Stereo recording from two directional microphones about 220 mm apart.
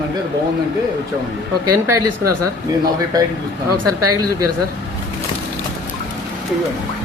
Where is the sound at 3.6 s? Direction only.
90° right.